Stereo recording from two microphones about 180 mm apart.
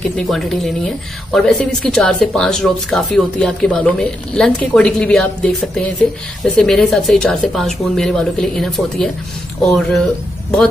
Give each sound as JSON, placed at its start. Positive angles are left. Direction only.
{"t": 0.1, "sound": "speech", "side_deg": 0}